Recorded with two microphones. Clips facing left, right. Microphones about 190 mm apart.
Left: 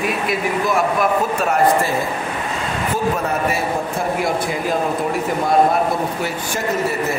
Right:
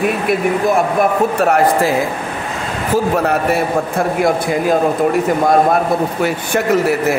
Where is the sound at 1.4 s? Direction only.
65° right (ahead or behind).